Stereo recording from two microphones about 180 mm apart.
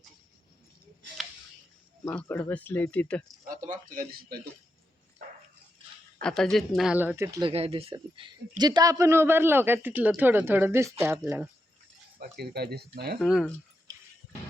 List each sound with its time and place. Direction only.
2.0 s speech: 10° left (ahead or behind)
3.4 s a man's voice: 50° right (ahead or behind)
6.2 s speech: 5° left (ahead or behind); by 7.4 s 15° right (ahead or behind)
7.4 s speech: 30° right (ahead or behind); by 11.4 s 15° right (ahead or behind)
12.2 s speech: 60° right (ahead or behind)
13.1 s speech: centre (ahead or behind)